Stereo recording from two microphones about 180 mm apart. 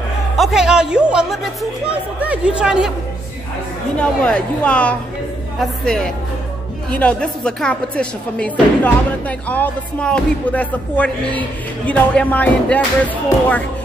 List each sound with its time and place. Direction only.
0.4 s speech: centre (ahead or behind)
3.9 s music: 5° left (ahead or behind)
5.6 s speech: 5° left (ahead or behind)
6.9 s music: 5° left (ahead or behind)